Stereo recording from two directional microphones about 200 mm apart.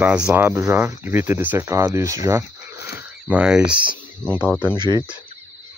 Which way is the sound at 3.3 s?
5° right (ahead or behind).